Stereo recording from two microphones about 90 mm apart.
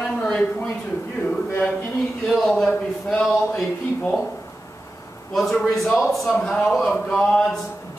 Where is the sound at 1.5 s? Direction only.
20° left (ahead or behind).